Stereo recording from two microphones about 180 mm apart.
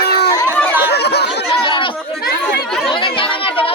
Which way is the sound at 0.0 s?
65° left (ahead or behind).